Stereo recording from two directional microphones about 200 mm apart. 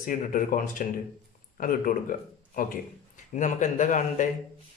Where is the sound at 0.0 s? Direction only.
45° left (ahead or behind).